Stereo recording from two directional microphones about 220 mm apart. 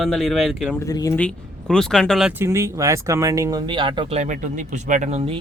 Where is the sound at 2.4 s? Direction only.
15° right (ahead or behind).